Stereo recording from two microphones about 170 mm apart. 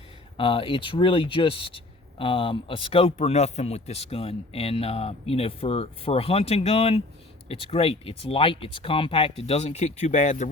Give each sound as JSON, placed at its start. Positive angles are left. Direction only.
{"t": 0.3, "sound": "speech", "side_deg": 30}